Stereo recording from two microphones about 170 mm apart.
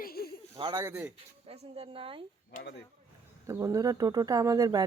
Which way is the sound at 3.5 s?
20° right (ahead or behind).